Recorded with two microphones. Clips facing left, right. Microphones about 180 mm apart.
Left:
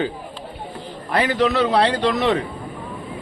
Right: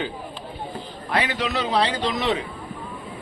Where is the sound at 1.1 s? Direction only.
45° left (ahead or behind).